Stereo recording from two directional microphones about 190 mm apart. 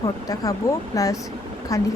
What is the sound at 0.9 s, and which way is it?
Speech, 20° left (ahead or behind).